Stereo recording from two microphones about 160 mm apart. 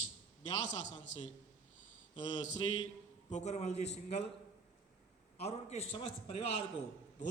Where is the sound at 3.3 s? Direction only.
45° left (ahead or behind).